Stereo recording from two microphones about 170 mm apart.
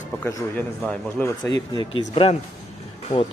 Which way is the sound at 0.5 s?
5° left (ahead or behind).